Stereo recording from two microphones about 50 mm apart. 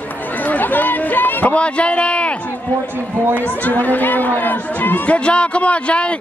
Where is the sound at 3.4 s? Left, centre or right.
Left.